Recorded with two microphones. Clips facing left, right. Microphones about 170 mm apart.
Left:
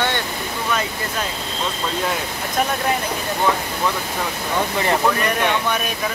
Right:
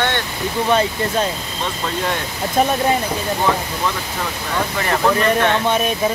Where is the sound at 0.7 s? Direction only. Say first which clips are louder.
Right 7 dB; 30° right (ahead or behind).